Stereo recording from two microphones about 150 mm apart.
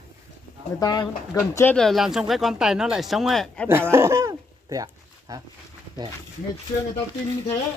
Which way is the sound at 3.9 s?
20° right (ahead or behind).